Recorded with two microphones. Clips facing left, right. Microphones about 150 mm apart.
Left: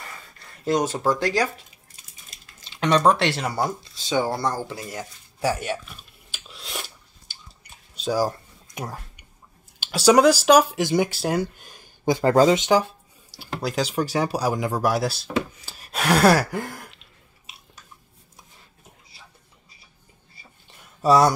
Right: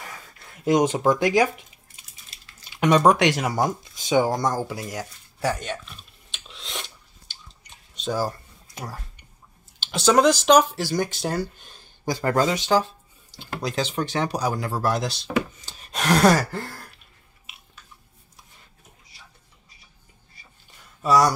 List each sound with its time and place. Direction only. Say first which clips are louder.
0.0 s speech: right 1 dB; 10° right (ahead or behind)
5.4 s a sound: left 2 dB; 5° left (ahead or behind)
9.8 s speech: left 3 dB; 10° left (ahead or behind)
12.0 s speech: left 5 dB; 25° left (ahead or behind)
12.6 s speech: left 2 dB; 15° left (ahead or behind)
15.6 s a sound: left 1 dB; 5° left (ahead or behind)
21.0 s speech: left 2 dB; 30° left (ahead or behind)